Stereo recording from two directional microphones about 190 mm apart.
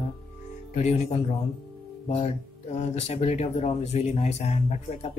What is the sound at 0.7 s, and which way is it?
Speech, 35° left (ahead or behind).